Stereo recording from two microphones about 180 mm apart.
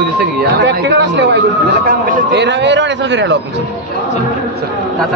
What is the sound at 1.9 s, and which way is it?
Speech, 50° right (ahead or behind).